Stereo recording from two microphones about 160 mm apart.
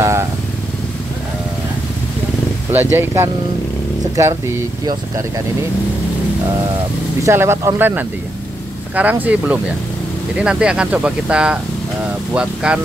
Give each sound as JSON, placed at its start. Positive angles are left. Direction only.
{"t": 0.0, "sound": "vehicle", "side_deg": -15}
{"t": 2.7, "sound": "speech", "side_deg": -15}
{"t": 7.2, "sound": "speech", "side_deg": -15}